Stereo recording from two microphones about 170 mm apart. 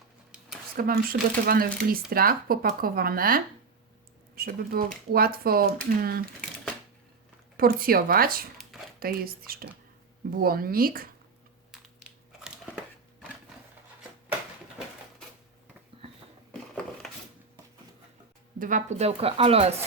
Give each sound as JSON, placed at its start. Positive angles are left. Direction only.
{"t": 0.8, "sound": "speech", "side_deg": -60}
{"t": 1.1, "sound": "speech", "side_deg": -70}
{"t": 1.5, "sound": "speech", "side_deg": -60}
{"t": 7.5, "sound": "speech", "side_deg": -60}
{"t": 16.5, "sound": "a sound", "side_deg": 5}
{"t": 18.6, "sound": "speech", "side_deg": -45}